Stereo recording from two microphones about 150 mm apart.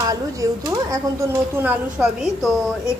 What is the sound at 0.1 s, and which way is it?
Speech, 20° right (ahead or behind).